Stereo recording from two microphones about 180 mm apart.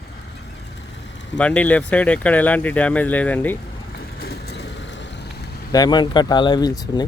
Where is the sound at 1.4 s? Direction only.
5° left (ahead or behind).